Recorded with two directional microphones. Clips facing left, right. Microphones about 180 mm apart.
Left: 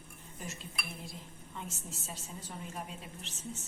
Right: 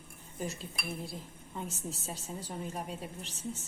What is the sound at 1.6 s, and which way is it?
Speech, 35° right (ahead or behind).